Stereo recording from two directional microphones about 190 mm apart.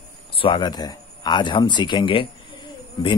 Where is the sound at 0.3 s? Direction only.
25° left (ahead or behind).